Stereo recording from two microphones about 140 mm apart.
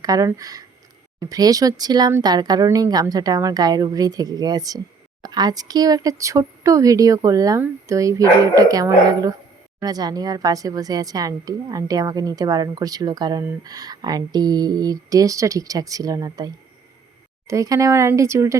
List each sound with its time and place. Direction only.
0.0 s a woman's voice: 25° right (ahead or behind)
17.5 s a woman's voice: 20° right (ahead or behind)